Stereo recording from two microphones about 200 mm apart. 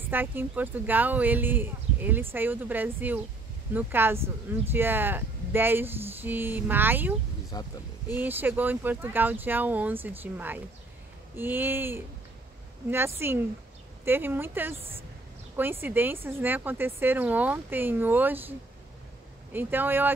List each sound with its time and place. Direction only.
0.0 s speech: 10° right (ahead or behind)
7.5 s a sound: 20° left (ahead or behind)
8.1 s speech: 10° right (ahead or behind)
13.2 s speech: 10° right (ahead or behind)
19.5 s speech: 10° right (ahead or behind)